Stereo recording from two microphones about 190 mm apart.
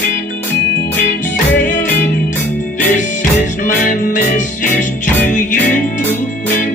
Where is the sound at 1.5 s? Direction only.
45° left (ahead or behind).